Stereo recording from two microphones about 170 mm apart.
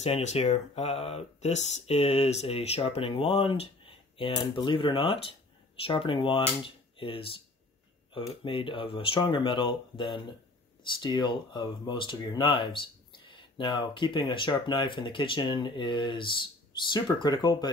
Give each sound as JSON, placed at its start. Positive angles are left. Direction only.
{"t": 0.0, "sound": "speech", "side_deg": 40}
{"t": 8.5, "sound": "speech", "side_deg": 30}